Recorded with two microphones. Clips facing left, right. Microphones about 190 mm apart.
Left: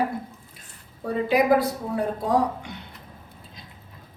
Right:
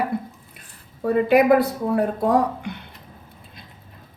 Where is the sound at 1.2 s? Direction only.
60° right (ahead or behind).